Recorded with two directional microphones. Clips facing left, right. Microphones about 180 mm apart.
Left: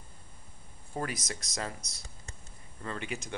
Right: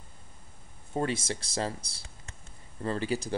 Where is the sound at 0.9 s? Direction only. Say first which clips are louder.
Right 6 dB; 25° right (ahead or behind).